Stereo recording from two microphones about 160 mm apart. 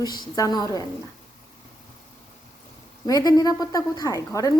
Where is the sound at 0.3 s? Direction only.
20° left (ahead or behind).